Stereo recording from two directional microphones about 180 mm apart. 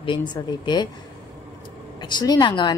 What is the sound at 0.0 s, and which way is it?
Speech, 25° left (ahead or behind).